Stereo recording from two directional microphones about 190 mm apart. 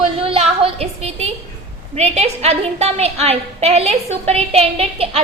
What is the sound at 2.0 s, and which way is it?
A woman's voice, 35° right (ahead or behind).